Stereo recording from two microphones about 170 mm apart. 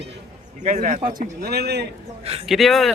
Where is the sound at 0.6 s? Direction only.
50° right (ahead or behind).